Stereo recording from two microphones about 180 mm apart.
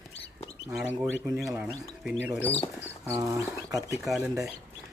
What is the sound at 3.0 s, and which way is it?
Speech, 15° right (ahead or behind).